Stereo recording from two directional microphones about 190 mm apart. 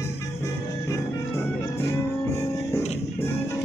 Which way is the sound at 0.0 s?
15° left (ahead or behind).